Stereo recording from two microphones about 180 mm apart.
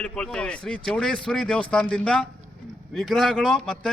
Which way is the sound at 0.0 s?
5° left (ahead or behind).